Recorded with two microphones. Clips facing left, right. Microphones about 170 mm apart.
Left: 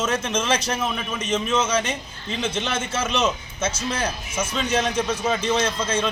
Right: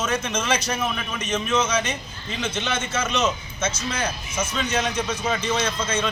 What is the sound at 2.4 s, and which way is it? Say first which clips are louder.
A man's voice: left 1 dB; 30° left (ahead or behind).